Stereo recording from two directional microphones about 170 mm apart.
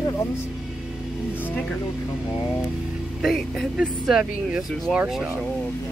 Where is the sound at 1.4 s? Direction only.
10° left (ahead or behind).